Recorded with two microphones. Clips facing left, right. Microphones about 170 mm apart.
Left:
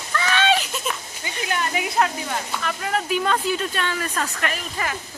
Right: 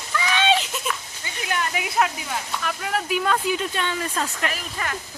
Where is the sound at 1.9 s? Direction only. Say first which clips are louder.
Even; 5° right (ahead or behind).